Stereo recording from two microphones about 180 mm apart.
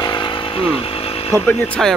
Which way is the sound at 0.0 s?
25° left (ahead or behind).